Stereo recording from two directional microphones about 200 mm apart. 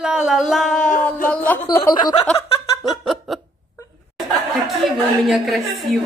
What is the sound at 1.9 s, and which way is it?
Snicker, 20° left (ahead or behind).